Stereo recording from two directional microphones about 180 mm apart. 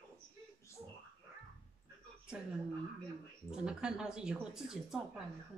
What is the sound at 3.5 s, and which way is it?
Speech, 5° right (ahead or behind).